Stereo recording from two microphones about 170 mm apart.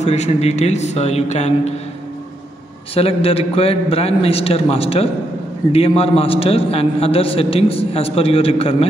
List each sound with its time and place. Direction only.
0.0 s a man's voice: 40° left (ahead or behind)
2.9 s a man's voice: 35° left (ahead or behind)